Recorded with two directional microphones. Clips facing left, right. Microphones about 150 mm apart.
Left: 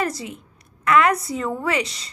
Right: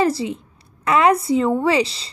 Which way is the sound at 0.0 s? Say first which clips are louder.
Right 7 dB; 30° right (ahead or behind).